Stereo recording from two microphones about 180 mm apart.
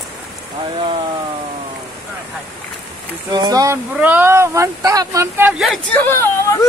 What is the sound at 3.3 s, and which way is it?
Speech, 20° right (ahead or behind).